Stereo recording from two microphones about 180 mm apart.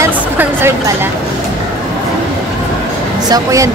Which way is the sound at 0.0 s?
15° right (ahead or behind).